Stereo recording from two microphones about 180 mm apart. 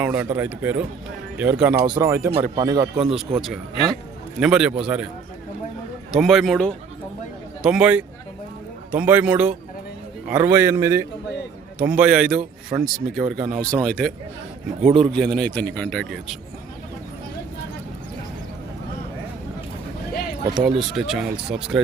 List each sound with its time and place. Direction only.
0.0 s speech: 10° right (ahead or behind)
2.9 s a man's voice: 5° right (ahead or behind)
6.1 s a man's voice: centre (ahead or behind)
14.8 s a man's voice: 40° right (ahead or behind)
15.1 s a man's voice: 5° left (ahead or behind)
20.6 s a man's voice: centre (ahead or behind)